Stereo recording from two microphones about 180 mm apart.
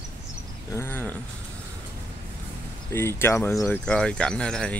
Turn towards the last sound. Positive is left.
turn(degrees=5)  # may be behind; listen again after turning